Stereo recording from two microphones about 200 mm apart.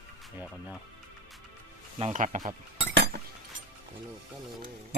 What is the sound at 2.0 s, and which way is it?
Speech, 35° right (ahead or behind).